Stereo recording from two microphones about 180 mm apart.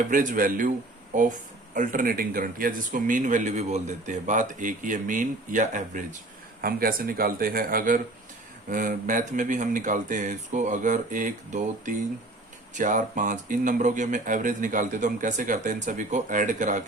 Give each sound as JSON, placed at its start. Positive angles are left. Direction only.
{"t": 0.1, "sound": "speech", "side_deg": -45}